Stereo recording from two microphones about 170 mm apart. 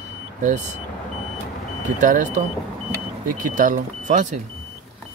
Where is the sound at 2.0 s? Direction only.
50° right (ahead or behind).